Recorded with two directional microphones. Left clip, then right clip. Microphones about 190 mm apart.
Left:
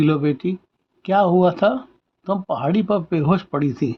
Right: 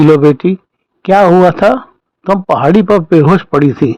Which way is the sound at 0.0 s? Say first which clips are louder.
Right 13 dB; 40° right (ahead or behind).